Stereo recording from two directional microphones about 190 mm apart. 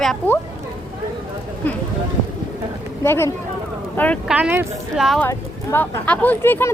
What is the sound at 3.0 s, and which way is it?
Speech, 15° left (ahead or behind).